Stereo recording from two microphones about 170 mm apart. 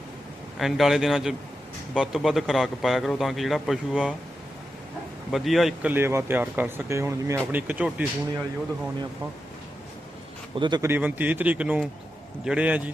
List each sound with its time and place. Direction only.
0.5 s a man's voice: centre (ahead or behind)
5.3 s speech: centre (ahead or behind)
10.6 s a man's voice: 25° right (ahead or behind)
10.8 s speech: 10° right (ahead or behind)